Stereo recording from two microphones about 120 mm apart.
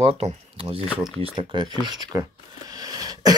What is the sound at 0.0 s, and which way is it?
Speech, 60° right (ahead or behind).